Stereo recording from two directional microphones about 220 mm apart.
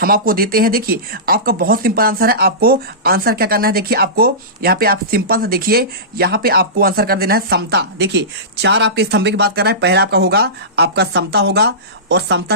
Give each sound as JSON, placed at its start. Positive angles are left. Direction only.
{"t": 0.0, "sound": "speech", "side_deg": -40}